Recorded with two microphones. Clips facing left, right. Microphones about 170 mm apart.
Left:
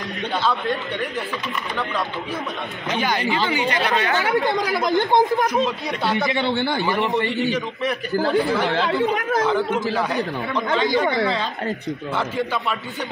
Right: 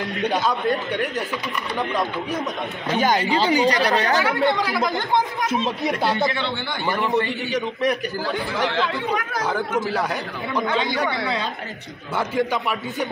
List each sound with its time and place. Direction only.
3.0 s speech: 40° right (ahead or behind)
6.9 s a man's voice: 20° left (ahead or behind)
8.2 s speech: 45° left (ahead or behind)